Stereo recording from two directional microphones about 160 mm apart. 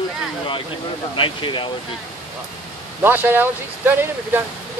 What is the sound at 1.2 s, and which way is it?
Speech, 30° left (ahead or behind).